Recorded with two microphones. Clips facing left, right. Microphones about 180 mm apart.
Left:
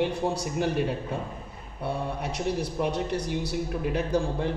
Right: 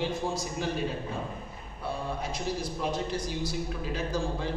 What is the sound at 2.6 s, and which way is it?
A man's voice, 65° left (ahead or behind).